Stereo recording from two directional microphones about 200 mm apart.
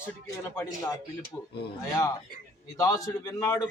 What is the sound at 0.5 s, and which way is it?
Speech, 15° left (ahead or behind).